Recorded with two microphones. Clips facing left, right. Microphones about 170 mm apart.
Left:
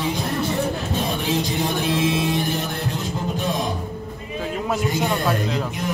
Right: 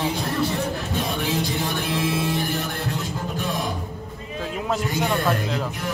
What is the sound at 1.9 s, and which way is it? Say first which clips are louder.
Music: left 3 dB; 20° left (ahead or behind).